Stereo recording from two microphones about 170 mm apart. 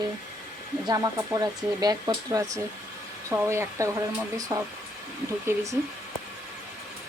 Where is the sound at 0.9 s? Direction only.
20° right (ahead or behind).